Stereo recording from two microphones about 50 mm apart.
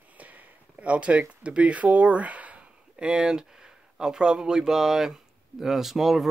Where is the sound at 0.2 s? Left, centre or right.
Right.